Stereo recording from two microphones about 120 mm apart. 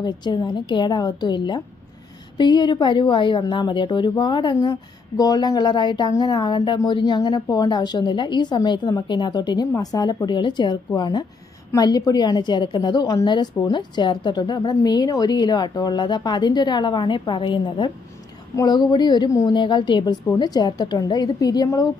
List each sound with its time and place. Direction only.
0.0 s a woman's voice: 35° left (ahead or behind)
19.5 s a woman's voice: 40° left (ahead or behind)